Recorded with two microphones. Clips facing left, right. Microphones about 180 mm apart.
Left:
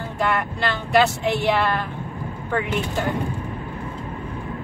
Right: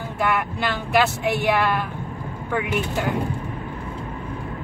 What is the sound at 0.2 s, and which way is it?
Speech, 10° right (ahead or behind).